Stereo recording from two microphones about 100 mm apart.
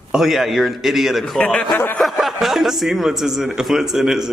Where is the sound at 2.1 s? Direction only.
Centre (ahead or behind).